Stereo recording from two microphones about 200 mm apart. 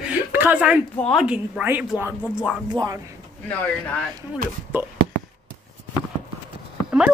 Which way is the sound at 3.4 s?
10° left (ahead or behind).